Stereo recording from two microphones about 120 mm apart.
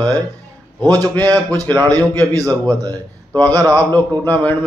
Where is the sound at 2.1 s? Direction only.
30° right (ahead or behind).